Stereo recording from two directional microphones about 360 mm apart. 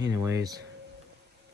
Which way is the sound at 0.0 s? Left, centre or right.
Centre.